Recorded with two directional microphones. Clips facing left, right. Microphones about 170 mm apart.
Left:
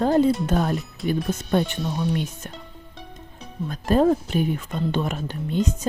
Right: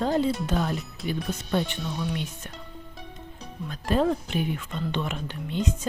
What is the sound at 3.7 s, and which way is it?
Speech, 45° left (ahead or behind).